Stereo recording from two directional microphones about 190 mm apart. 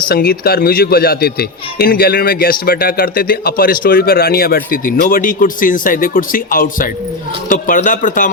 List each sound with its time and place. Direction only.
0.1 s speech: 55° left (ahead or behind)